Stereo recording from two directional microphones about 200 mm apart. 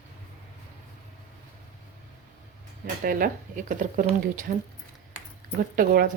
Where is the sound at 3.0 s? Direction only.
45° right (ahead or behind).